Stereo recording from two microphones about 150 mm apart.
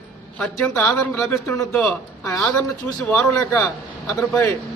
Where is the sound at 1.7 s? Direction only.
10° left (ahead or behind).